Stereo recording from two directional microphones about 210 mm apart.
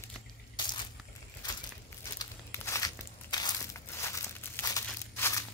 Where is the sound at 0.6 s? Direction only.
20° left (ahead or behind).